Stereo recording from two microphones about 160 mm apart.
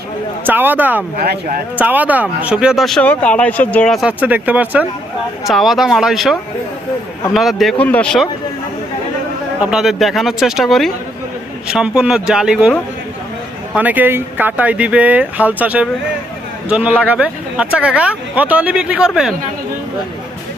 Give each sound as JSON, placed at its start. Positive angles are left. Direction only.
{"t": 0.4, "sound": "speech", "side_deg": -10}
{"t": 1.2, "sound": "speech", "side_deg": -70}
{"t": 1.7, "sound": "speech", "side_deg": -10}
{"t": 4.0, "sound": "speech", "side_deg": -10}
{"t": 7.3, "sound": "speech", "side_deg": 0}
{"t": 9.6, "sound": "speech", "side_deg": -5}
{"t": 13.7, "sound": "speech", "side_deg": -10}